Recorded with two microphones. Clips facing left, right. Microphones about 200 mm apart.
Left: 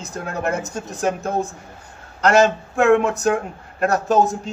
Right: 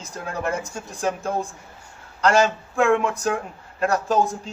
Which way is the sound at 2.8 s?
45° left (ahead or behind).